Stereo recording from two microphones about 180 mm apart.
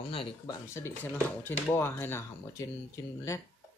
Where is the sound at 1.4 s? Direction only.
10° left (ahead or behind).